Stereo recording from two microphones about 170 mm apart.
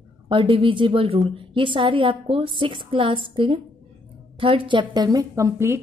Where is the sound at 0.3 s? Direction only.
30° right (ahead or behind).